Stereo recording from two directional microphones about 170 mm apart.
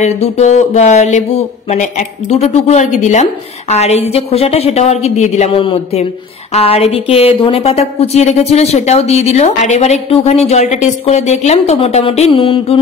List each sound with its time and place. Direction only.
0.0 s a woman's voice: 40° left (ahead or behind)